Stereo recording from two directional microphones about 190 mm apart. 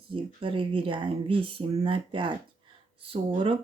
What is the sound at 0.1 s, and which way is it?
Speech, 25° right (ahead or behind).